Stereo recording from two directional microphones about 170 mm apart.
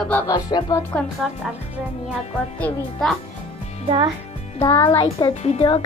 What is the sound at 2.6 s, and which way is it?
Speech, 5° left (ahead or behind).